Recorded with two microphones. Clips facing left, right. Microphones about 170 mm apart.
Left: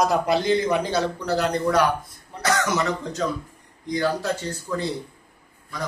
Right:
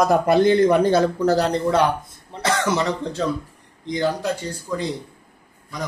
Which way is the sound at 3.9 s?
20° right (ahead or behind).